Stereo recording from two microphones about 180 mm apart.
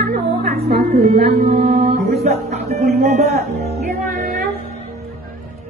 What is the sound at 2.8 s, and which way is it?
Speech, 60° right (ahead or behind).